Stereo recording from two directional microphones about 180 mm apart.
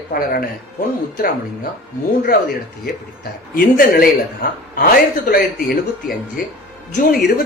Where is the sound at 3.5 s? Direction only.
55° left (ahead or behind).